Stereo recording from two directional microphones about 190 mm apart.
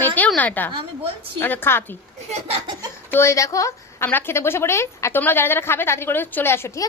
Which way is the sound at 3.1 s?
15° left (ahead or behind).